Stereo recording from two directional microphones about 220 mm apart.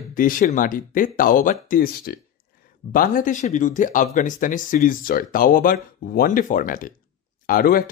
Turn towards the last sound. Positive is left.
turn(degrees=40)  # may be behind; listen again after turning